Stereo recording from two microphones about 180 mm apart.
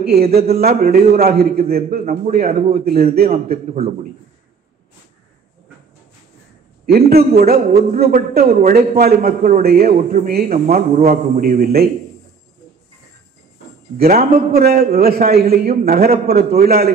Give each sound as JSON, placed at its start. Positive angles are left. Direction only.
{"t": 0.0, "sound": "a man's voice", "side_deg": -60}
{"t": 6.9, "sound": "a man's voice", "side_deg": -60}
{"t": 11.1, "sound": "a man's voice", "side_deg": -45}
{"t": 13.9, "sound": "a man's voice", "side_deg": -55}